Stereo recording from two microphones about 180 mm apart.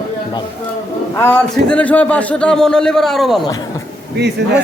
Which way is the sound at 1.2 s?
10° left (ahead or behind).